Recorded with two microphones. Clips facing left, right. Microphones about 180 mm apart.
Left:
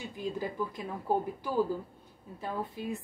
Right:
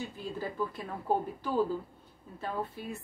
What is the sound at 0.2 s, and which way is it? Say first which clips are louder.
Speech: left 3 dB; 15° left (ahead or behind).